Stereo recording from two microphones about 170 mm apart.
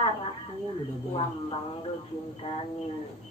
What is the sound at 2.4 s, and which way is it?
Speech, 30° left (ahead or behind).